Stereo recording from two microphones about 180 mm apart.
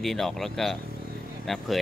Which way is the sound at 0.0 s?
Centre (ahead or behind).